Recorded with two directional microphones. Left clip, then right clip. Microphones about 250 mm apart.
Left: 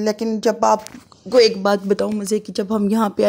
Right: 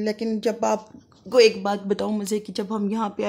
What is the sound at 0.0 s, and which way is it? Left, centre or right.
Speech, centre.